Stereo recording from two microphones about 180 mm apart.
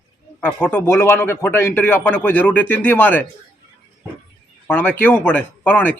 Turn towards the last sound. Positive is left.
turn(degrees=10)  # may be behind; listen again after turning